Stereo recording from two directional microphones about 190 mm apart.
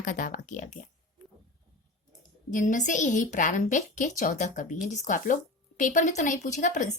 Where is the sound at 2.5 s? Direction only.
40° left (ahead or behind).